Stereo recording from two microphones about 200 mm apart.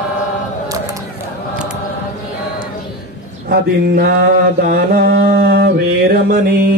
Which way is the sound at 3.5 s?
50° right (ahead or behind).